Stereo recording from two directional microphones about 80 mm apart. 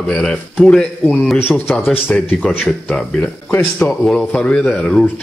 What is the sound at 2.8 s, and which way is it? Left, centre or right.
Speech, centre.